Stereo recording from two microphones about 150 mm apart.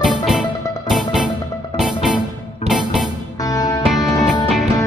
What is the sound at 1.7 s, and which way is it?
Music, 5° right (ahead or behind).